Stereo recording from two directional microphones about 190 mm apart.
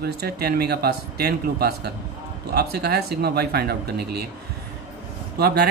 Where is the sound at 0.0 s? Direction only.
55° right (ahead or behind).